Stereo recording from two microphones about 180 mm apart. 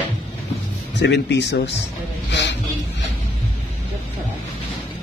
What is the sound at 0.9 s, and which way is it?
Speech, 75° left (ahead or behind).